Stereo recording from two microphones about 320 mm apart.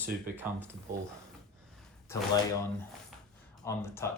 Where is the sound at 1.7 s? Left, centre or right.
Centre.